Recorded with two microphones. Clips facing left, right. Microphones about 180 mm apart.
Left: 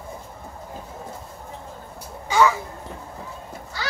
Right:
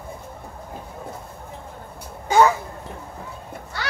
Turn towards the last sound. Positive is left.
turn(degrees=-65)  # may be behind; listen again after turning